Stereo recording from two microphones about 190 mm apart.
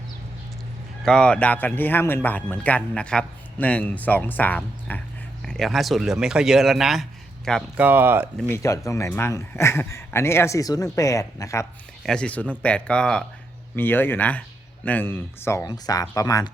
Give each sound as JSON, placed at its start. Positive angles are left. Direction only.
{"t": 1.0, "sound": "speech", "side_deg": 5}
{"t": 7.8, "sound": "speech", "side_deg": -10}
{"t": 8.4, "sound": "speech", "side_deg": 10}
{"t": 12.0, "sound": "speech", "side_deg": 5}